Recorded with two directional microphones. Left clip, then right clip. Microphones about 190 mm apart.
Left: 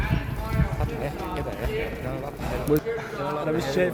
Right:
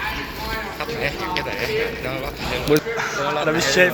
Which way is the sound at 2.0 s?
35° left (ahead or behind).